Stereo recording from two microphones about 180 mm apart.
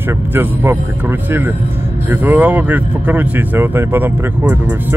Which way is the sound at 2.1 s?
10° right (ahead or behind).